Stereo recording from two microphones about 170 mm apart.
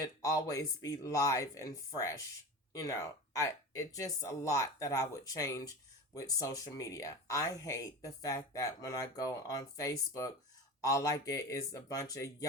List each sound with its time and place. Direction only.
0.0 s speech: 20° left (ahead or behind)